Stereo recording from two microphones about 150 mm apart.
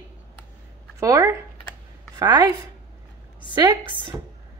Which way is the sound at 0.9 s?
20° right (ahead or behind).